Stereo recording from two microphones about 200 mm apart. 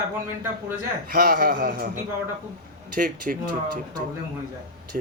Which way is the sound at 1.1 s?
50° right (ahead or behind).